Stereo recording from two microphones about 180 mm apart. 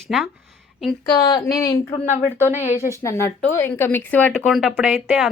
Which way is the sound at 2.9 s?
15° left (ahead or behind).